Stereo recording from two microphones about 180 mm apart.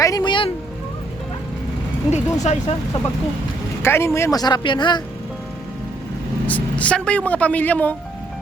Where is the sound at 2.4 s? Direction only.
40° left (ahead or behind).